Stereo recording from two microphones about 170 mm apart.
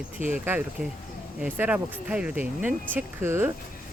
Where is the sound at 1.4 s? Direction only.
10° right (ahead or behind).